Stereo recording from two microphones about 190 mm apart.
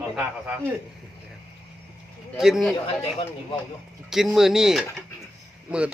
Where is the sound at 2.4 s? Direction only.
Centre (ahead or behind).